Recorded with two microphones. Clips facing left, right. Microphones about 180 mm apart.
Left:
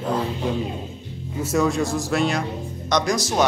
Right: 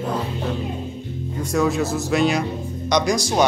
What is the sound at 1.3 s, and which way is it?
Speech, 5° left (ahead or behind).